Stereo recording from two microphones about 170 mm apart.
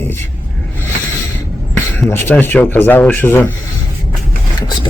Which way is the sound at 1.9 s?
10° left (ahead or behind).